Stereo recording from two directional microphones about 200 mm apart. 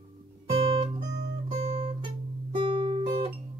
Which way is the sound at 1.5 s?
30° right (ahead or behind).